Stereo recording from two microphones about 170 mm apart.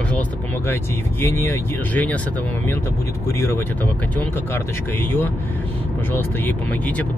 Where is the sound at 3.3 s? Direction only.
15° left (ahead or behind).